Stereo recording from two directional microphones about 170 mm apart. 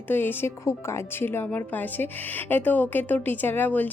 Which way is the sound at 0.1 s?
10° left (ahead or behind).